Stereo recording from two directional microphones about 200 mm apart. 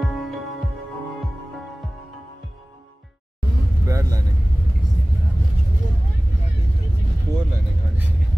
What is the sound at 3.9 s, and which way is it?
Vehicle, 15° right (ahead or behind).